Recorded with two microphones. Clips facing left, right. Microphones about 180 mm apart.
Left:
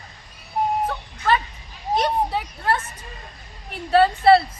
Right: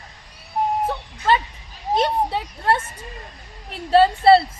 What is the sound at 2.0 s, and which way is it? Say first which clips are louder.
Speech: right 1 dB; 25° right (ahead or behind).